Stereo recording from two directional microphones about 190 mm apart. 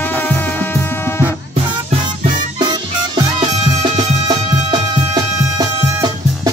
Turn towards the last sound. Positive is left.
turn(degrees=-20)  # may be behind; listen again after turning